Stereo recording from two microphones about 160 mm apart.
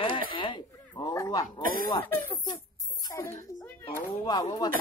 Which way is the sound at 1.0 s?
20° left (ahead or behind).